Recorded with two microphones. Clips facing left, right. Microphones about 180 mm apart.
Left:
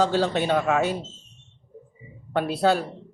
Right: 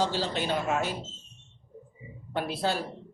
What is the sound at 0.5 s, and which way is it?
Speech, 90° left.